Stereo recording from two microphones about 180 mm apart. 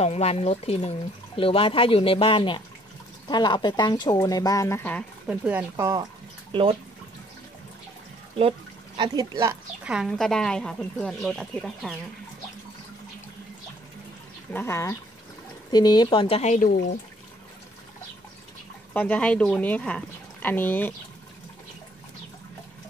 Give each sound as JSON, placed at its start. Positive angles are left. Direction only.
{"t": 0.0, "sound": "speech", "side_deg": 35}
{"t": 5.3, "sound": "speech", "side_deg": -10}
{"t": 6.5, "sound": "speech", "side_deg": -30}
{"t": 8.4, "sound": "speech", "side_deg": -30}
{"t": 9.8, "sound": "speech", "side_deg": 0}
{"t": 14.5, "sound": "speech", "side_deg": 15}
{"t": 18.9, "sound": "speech", "side_deg": 5}